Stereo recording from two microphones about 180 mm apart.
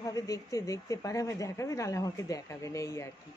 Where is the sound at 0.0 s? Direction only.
20° left (ahead or behind).